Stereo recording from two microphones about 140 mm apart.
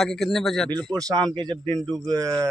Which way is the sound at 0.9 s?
25° right (ahead or behind).